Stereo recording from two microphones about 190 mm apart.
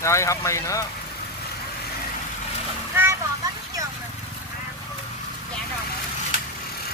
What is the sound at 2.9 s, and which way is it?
Splash, 10° right (ahead or behind).